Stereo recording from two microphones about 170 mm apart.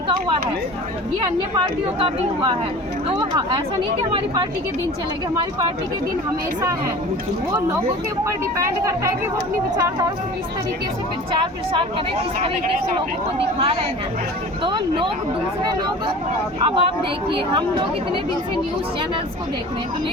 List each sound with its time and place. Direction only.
1.5 s speech: 30° right (ahead or behind)
7.5 s speech: 15° right (ahead or behind)
11.3 s speech: 30° right (ahead or behind)
16.6 s speech: 30° right (ahead or behind)